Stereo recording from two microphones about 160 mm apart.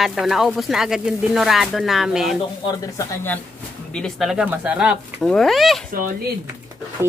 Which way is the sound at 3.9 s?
Centre (ahead or behind).